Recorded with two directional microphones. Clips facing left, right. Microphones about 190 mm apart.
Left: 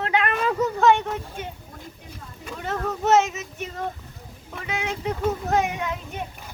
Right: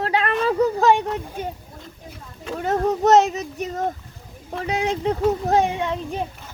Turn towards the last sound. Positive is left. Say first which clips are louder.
# right 5 dB
turn(degrees=-30)  # may be behind; listen again after turning